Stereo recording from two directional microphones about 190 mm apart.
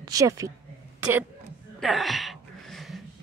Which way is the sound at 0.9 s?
10° right (ahead or behind).